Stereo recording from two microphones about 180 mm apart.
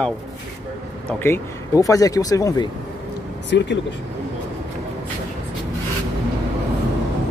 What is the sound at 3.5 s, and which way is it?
Speech, 75° left (ahead or behind).